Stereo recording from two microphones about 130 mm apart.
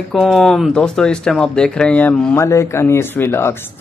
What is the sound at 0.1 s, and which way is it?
Speech, centre (ahead or behind).